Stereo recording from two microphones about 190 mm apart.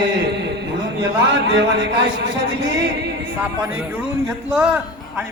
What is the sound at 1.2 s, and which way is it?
A man's voice, 65° right (ahead or behind).